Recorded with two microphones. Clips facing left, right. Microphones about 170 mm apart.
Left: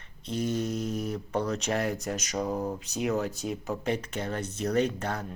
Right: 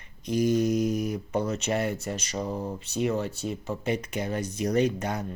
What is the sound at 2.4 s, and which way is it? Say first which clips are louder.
Mantra: left 2 dB; 20° left (ahead or behind).